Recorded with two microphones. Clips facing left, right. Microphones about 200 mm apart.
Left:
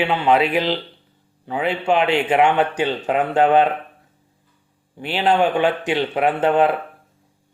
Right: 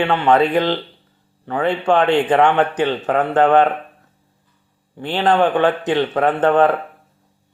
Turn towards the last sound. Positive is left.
turn(degrees=10)  # may be behind; listen again after turning